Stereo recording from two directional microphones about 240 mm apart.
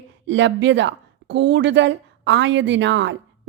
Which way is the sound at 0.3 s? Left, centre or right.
Right.